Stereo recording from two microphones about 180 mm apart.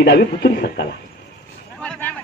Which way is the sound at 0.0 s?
65° left (ahead or behind).